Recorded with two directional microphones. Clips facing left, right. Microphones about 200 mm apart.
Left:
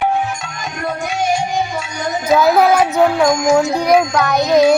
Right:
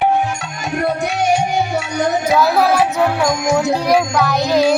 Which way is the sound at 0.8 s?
70° right (ahead or behind).